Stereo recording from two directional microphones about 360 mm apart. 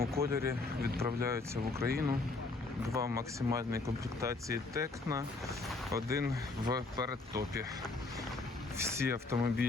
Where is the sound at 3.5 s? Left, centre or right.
Centre.